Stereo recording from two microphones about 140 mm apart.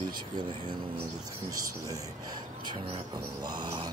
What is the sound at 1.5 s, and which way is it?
Speech, 25° right (ahead or behind).